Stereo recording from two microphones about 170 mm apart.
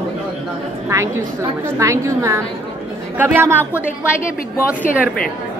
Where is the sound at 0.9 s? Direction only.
15° right (ahead or behind).